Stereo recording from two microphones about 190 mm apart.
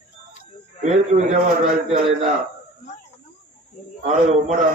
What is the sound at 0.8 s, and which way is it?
Speech, 40° right (ahead or behind).